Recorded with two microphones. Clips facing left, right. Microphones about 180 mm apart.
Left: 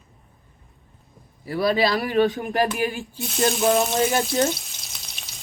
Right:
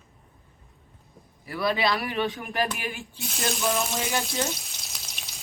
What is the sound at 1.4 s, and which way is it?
Speech, 35° left (ahead or behind).